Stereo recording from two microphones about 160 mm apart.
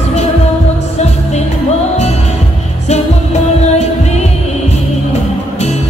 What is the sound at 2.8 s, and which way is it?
Music, 45° left (ahead or behind).